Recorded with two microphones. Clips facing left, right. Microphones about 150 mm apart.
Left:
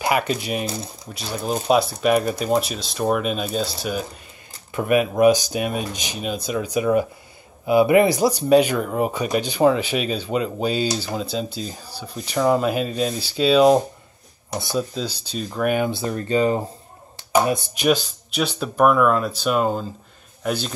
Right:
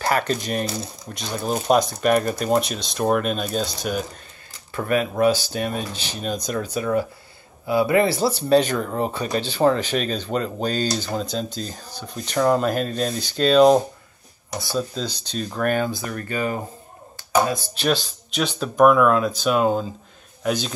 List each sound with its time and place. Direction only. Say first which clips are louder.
0.0 s speech: left 1 dB; 10° left (ahead or behind)
4.7 s speech: left 3 dB; 15° left (ahead or behind)
14.5 s speech: left 2 dB; 20° left (ahead or behind)
14.8 s speech: even; 10° left (ahead or behind)
15.9 s speech: left 6 dB; 25° left (ahead or behind); by 20.7 s centre (ahead or behind)